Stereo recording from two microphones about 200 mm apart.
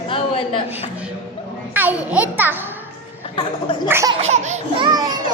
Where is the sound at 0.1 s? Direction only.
25° left (ahead or behind).